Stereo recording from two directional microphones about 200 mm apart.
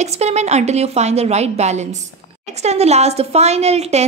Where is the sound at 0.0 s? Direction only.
35° right (ahead or behind).